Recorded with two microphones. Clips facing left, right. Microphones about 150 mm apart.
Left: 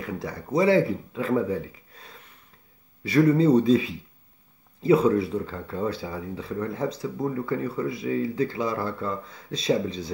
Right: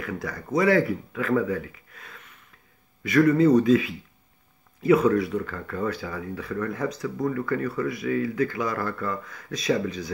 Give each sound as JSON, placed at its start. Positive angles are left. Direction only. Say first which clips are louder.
{"t": 0.0, "sound": "speech", "louder": "even", "side_deg": 30}